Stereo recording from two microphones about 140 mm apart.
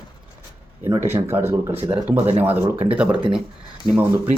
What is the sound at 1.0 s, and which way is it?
Speech, 15° right (ahead or behind).